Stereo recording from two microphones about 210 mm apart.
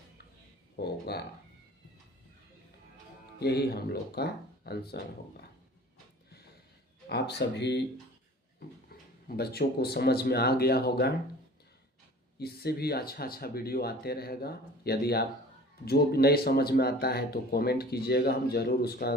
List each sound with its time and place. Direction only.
0.8 s speech: 50° left (ahead or behind)
3.4 s speech: 50° left (ahead or behind)
7.1 s speech: 50° left (ahead or behind)
8.9 s speech: 45° left (ahead or behind)
12.4 s speech: 50° left (ahead or behind)